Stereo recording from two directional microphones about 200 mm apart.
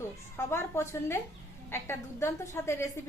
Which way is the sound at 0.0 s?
15° left (ahead or behind).